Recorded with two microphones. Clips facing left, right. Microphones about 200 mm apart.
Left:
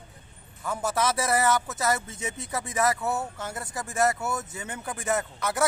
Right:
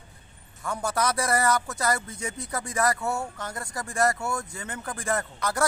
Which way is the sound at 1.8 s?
25° left (ahead or behind).